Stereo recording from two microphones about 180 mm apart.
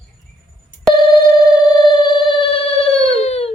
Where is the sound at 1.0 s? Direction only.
25° left (ahead or behind).